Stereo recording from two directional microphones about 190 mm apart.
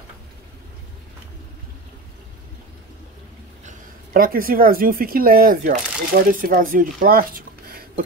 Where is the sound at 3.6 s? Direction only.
50° right (ahead or behind).